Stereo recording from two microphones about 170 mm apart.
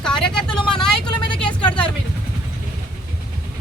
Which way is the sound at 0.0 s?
5° left (ahead or behind).